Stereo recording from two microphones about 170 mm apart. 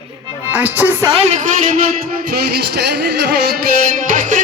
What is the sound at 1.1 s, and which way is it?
Speech, 40° right (ahead or behind).